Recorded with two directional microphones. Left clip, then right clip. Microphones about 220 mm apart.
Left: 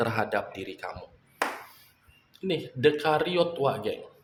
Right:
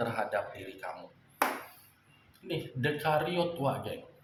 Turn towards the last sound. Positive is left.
turn(degrees=45)  # may be behind; listen again after turning